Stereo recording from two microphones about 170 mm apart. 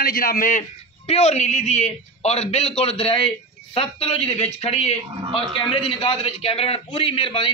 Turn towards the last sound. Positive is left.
turn(degrees=30)  # may be behind; listen again after turning